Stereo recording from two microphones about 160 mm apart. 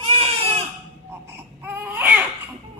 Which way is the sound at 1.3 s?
15° right (ahead or behind).